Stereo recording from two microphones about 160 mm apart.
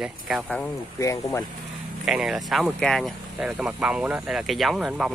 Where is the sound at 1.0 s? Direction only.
20° left (ahead or behind).